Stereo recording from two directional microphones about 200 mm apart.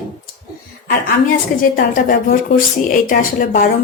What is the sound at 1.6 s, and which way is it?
A woman's voice, 45° left (ahead or behind).